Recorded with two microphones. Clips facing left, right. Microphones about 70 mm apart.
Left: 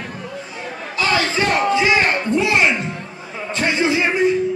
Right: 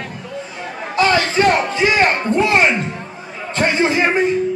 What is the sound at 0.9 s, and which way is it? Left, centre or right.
A man's voice, right.